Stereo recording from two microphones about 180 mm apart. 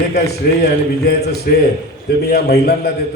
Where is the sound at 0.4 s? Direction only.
60° left (ahead or behind).